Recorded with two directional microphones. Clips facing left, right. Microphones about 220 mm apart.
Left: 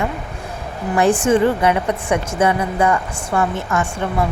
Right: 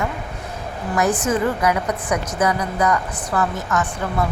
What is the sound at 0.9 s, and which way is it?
A woman's voice, 30° left (ahead or behind).